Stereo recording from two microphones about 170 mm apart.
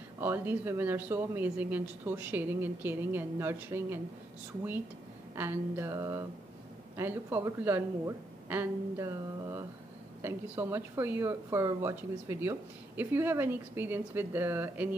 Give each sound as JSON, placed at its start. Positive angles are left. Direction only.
{"t": 0.2, "sound": "a woman's voice", "side_deg": -15}
{"t": 5.3, "sound": "a woman's voice", "side_deg": -15}